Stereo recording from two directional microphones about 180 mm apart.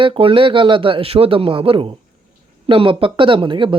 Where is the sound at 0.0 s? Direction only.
30° right (ahead or behind).